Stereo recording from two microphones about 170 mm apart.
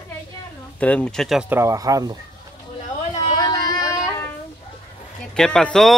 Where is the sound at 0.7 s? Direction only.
5° left (ahead or behind).